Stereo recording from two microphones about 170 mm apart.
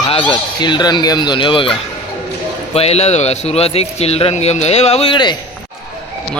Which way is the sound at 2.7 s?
35° left (ahead or behind).